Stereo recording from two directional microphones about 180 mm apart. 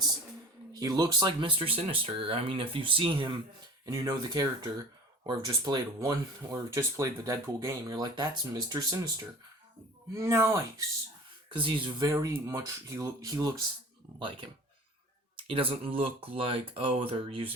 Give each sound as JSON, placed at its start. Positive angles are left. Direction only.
{"t": 0.7, "sound": "speech", "side_deg": -20}
{"t": 3.8, "sound": "speech", "side_deg": -15}
{"t": 11.4, "sound": "speech", "side_deg": -25}
{"t": 15.4, "sound": "a sound", "side_deg": -30}
{"t": 16.0, "sound": "speech", "side_deg": -30}